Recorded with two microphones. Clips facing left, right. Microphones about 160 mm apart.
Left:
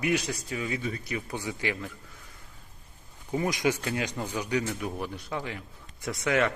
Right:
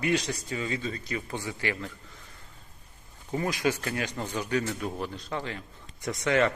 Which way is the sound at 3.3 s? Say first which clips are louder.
Left 1 dB; 15° left (ahead or behind).